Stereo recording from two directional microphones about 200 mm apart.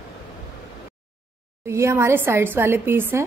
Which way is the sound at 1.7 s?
15° right (ahead or behind).